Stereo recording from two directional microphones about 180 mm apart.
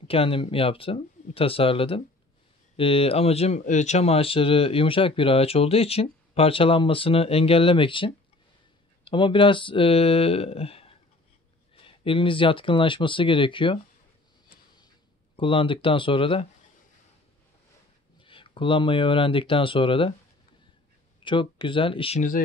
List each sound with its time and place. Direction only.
0.1 s speech: 30° left (ahead or behind)
15.3 s speech: 30° left (ahead or behind)
18.2 s speech: 30° left (ahead or behind)
21.2 s speech: 30° left (ahead or behind)